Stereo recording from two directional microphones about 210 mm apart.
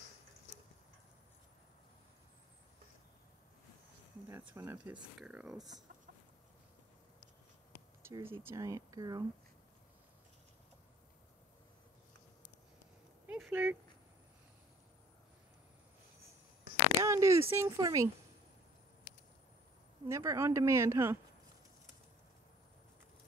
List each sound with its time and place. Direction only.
4.3 s speech: 10° right (ahead or behind)
7.7 s speech: 15° right (ahead or behind)
13.3 s a sound: 5° right (ahead or behind)
17.0 s a sound: 15° right (ahead or behind)
17.5 s speech: 15° right (ahead or behind)
20.1 s speech: 15° right (ahead or behind)